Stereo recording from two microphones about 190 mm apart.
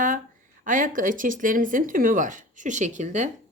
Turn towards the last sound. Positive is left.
turn(degrees=-40)  # may be behind; listen again after turning